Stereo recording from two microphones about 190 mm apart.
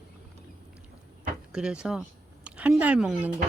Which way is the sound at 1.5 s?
5° right (ahead or behind).